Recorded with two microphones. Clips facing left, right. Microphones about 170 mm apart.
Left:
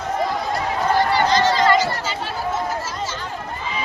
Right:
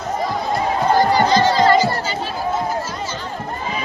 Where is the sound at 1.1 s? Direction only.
35° right (ahead or behind).